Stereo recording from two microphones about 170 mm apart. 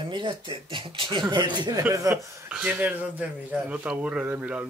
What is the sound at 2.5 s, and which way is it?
Speech, 10° right (ahead or behind).